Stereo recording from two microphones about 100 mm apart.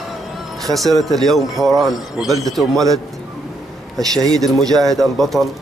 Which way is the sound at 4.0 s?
40° right (ahead or behind).